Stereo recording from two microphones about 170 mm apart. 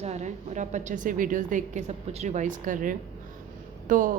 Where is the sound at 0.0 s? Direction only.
40° right (ahead or behind).